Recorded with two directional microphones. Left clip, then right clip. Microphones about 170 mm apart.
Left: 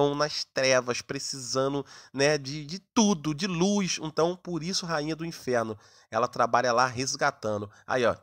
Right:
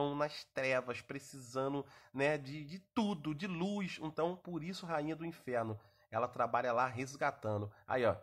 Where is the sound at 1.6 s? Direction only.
35° left (ahead or behind).